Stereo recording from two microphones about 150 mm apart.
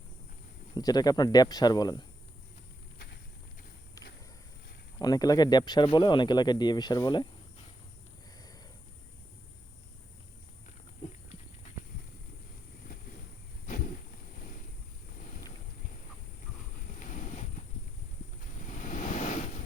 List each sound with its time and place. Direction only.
0.7 s speech: 25° left (ahead or behind)
4.9 s speech: 25° left (ahead or behind)
16.7 s vehicle: 60° left (ahead or behind)
18.6 s vehicle: 55° left (ahead or behind)